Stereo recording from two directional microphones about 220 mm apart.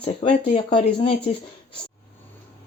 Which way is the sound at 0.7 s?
25° left (ahead or behind).